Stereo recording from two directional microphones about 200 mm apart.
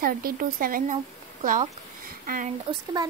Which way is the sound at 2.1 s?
45° right (ahead or behind).